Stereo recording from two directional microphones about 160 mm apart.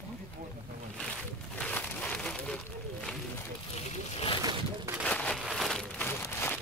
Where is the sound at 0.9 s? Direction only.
5° left (ahead or behind).